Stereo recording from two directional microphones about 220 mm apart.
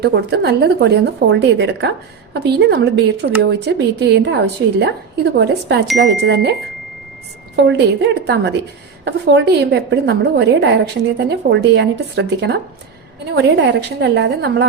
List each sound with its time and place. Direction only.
0.0 s a woman's voice: 50° right (ahead or behind)